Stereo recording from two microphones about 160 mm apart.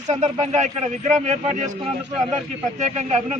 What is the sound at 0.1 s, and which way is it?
Speech, 45° right (ahead or behind).